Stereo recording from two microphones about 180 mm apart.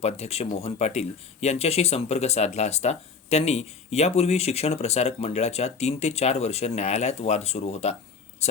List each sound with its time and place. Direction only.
0.0 s speech: 35° left (ahead or behind)